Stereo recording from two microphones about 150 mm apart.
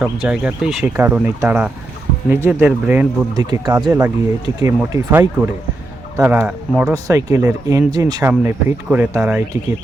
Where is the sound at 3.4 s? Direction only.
25° right (ahead or behind).